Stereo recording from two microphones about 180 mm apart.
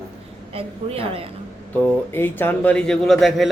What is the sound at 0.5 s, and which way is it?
Speech, 35° right (ahead or behind).